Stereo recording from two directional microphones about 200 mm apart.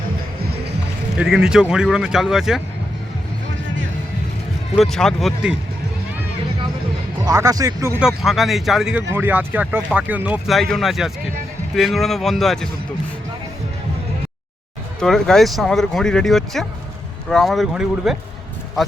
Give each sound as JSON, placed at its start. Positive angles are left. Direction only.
{"t": 0.4, "sound": "music", "side_deg": -55}
{"t": 1.1, "sound": "speech", "side_deg": -5}
{"t": 4.7, "sound": "speech", "side_deg": 0}
{"t": 7.3, "sound": "speech", "side_deg": -15}
{"t": 15.0, "sound": "speech", "side_deg": 0}